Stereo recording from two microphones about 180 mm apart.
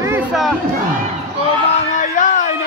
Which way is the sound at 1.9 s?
45° left (ahead or behind).